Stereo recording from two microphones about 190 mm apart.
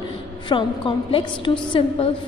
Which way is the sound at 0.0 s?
25° left (ahead or behind).